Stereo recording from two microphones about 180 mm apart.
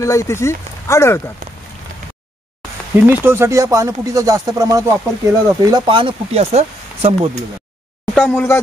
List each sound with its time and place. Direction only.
0.0 s speech: 15° left (ahead or behind)
3.1 s speech: 15° right (ahead or behind); by 7.2 s 35° right (ahead or behind)
8.1 s speech: 5° left (ahead or behind)